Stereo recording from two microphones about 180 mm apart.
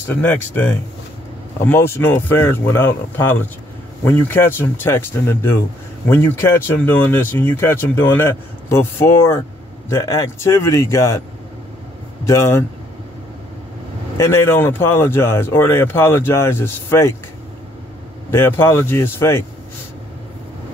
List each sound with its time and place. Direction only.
0.1 s speech: 10° left (ahead or behind)
12.3 s speech: 15° left (ahead or behind)
14.1 s speech: 15° left (ahead or behind)
18.3 s speech: 15° left (ahead or behind)